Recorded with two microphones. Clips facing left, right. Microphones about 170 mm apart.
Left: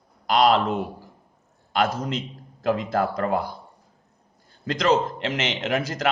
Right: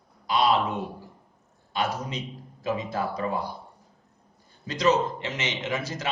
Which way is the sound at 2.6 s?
90° left.